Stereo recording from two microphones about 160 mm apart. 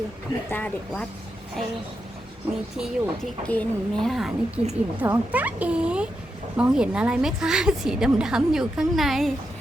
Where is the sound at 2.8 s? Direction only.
5° left (ahead or behind).